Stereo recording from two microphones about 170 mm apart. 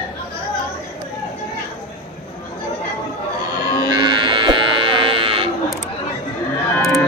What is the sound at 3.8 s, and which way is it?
Livestock, 25° right (ahead or behind).